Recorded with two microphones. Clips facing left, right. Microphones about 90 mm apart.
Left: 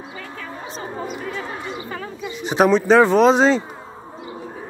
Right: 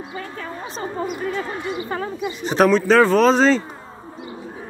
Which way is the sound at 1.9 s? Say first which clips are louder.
Right 4 dB; 40° right (ahead or behind).